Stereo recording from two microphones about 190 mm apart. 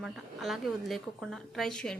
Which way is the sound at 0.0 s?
Centre (ahead or behind).